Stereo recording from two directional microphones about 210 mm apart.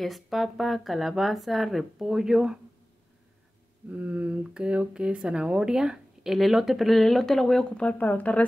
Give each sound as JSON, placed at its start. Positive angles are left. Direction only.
{"t": 0.0, "sound": "speech", "side_deg": 0}
{"t": 3.9, "sound": "speech", "side_deg": -5}